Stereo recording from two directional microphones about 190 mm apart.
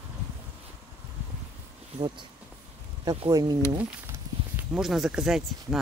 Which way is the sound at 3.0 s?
20° right (ahead or behind).